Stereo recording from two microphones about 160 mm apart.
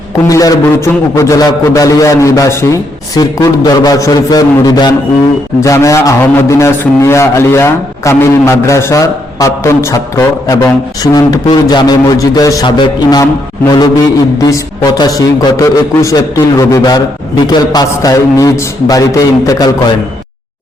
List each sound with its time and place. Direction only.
0.3 s a man's voice: 20° left (ahead or behind)
14.3 s a man's voice: 20° left (ahead or behind)